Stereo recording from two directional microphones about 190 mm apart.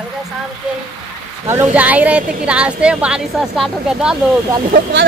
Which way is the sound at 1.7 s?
10° right (ahead or behind).